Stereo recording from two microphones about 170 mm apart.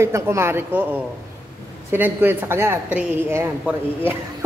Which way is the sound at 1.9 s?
10° right (ahead or behind).